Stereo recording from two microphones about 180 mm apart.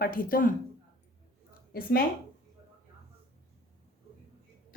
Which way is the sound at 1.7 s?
55° left (ahead or behind).